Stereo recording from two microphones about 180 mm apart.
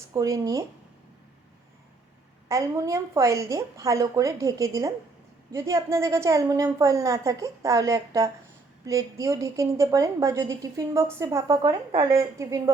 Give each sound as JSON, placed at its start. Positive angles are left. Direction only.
{"t": 0.1, "sound": "speech", "side_deg": -20}
{"t": 2.5, "sound": "a woman's voice", "side_deg": -15}
{"t": 12.1, "sound": "a woman's voice", "side_deg": -15}